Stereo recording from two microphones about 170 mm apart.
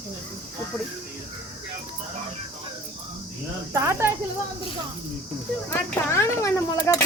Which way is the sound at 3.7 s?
15° right (ahead or behind).